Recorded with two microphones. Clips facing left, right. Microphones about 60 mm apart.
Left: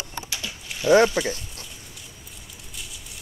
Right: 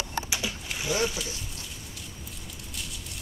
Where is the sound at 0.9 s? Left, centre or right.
Left.